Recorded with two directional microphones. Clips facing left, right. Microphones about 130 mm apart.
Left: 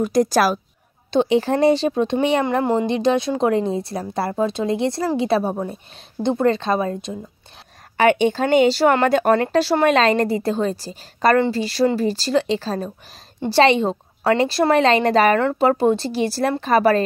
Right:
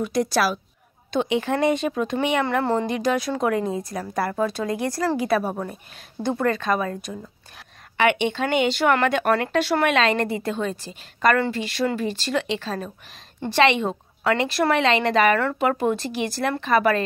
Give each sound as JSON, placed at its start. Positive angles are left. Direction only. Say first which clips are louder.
{"t": 0.0, "sound": "speech", "louder": "left 5 dB", "side_deg": 40}
{"t": 1.1, "sound": "speech", "louder": "left 5 dB", "side_deg": 35}
{"t": 2.6, "sound": "speech", "louder": "left 3 dB", "side_deg": 15}
{"t": 2.9, "sound": "a woman's voice", "louder": "left 4 dB", "side_deg": 25}
{"t": 8.0, "sound": "speech", "louder": "left 5 dB", "side_deg": 40}